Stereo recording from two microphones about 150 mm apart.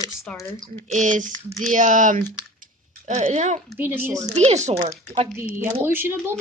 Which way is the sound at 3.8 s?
15° right (ahead or behind).